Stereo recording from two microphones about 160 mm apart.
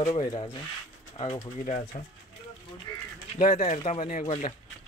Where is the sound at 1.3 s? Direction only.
50° left (ahead or behind).